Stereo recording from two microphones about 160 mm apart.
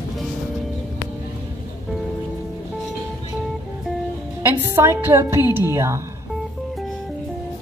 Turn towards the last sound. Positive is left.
turn(degrees=-15)  # may be behind; listen again after turning